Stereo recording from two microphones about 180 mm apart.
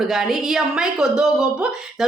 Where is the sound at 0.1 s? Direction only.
Centre (ahead or behind).